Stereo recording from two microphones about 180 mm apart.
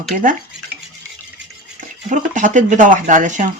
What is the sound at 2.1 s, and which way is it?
Speech, 45° right (ahead or behind).